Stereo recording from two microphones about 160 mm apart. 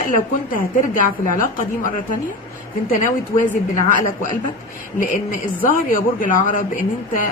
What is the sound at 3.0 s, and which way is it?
A woman's voice, 55° left (ahead or behind).